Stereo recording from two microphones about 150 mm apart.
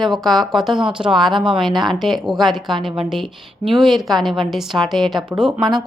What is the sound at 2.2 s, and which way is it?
Speech, centre (ahead or behind).